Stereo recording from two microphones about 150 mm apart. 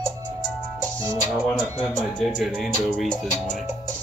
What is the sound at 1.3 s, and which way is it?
Speech, 5° left (ahead or behind).